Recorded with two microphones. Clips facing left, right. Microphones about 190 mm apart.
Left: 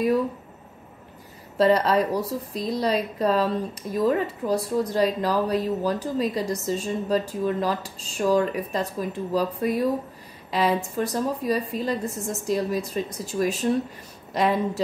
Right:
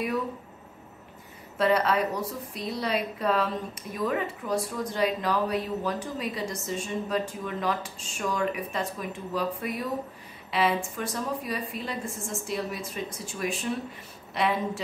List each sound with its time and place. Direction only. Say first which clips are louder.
1.6 s speech: left 4 dB; 35° left (ahead or behind)